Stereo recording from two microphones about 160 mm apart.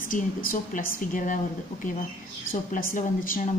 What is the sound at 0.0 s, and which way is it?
A woman's voice, 60° left (ahead or behind).